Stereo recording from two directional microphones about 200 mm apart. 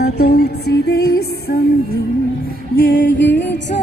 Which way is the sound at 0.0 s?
55° left (ahead or behind).